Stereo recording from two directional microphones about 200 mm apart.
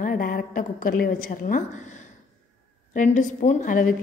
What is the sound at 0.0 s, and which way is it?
A woman's voice, 45° left (ahead or behind).